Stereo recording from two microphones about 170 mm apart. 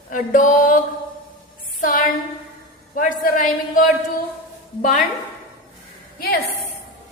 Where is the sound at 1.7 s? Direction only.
55° left (ahead or behind).